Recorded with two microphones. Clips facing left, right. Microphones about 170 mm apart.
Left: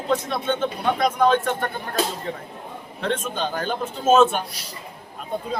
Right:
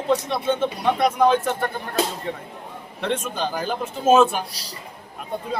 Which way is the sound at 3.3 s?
5° right (ahead or behind).